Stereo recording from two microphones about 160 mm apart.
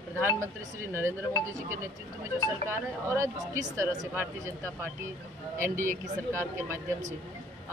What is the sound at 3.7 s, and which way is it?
Speech, 15° right (ahead or behind).